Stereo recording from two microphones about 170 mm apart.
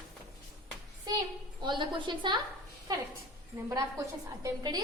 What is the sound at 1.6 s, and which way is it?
Speech, 30° right (ahead or behind).